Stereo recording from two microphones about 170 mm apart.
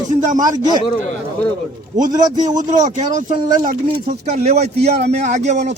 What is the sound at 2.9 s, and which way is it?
Speech, 45° right (ahead or behind).